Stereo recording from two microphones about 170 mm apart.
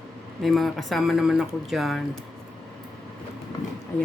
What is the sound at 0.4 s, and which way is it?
Speech, centre (ahead or behind).